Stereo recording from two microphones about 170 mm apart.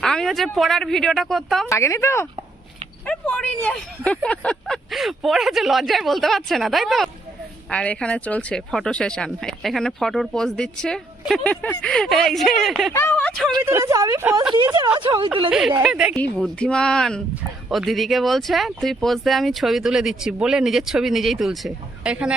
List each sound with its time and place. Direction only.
0.0 s speech: 5° left (ahead or behind)
1.7 s speech: 15° left (ahead or behind); by 12.9 s centre (ahead or behind)
12.9 s speech: 15° left (ahead or behind)
13.6 s speech: 15° right (ahead or behind)
14.9 s speech: 25° right (ahead or behind)
15.4 s speech: 5° right (ahead or behind)